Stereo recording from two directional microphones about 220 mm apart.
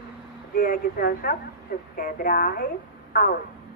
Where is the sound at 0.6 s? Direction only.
40° left (ahead or behind).